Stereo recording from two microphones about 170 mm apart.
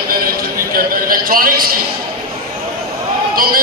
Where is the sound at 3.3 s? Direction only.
60° right (ahead or behind).